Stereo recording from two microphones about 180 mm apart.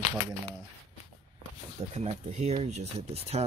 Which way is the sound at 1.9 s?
40° right (ahead or behind).